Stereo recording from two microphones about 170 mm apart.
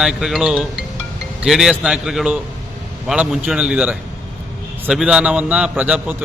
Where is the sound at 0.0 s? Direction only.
Centre (ahead or behind).